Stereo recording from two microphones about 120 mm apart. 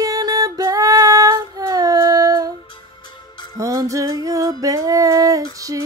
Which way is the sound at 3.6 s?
25° right (ahead or behind).